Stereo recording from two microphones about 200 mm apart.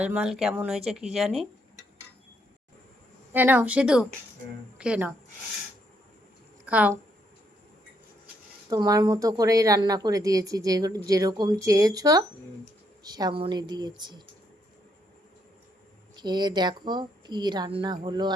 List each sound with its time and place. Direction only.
0.0 s speech: 5° right (ahead or behind)
3.3 s speech: 10° right (ahead or behind)
6.7 s speech: 5° right (ahead or behind)
8.7 s a woman's voice: 20° right (ahead or behind)
16.1 s a woman's voice: 20° right (ahead or behind)